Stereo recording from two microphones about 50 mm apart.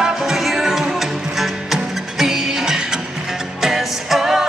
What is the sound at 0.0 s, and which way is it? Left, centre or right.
Music, centre.